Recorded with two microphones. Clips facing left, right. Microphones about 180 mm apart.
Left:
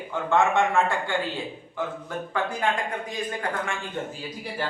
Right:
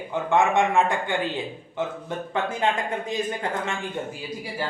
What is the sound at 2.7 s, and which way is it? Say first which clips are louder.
Speech: right 2 dB; 25° right (ahead or behind).